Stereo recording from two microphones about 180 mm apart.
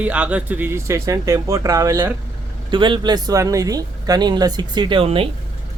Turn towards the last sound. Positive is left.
turn(degrees=-30)  # may be behind; listen again after turning